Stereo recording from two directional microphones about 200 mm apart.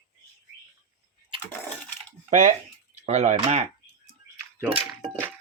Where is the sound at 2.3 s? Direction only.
35° right (ahead or behind).